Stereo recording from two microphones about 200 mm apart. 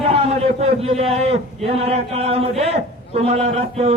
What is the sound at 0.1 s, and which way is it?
A man's voice, 30° right (ahead or behind).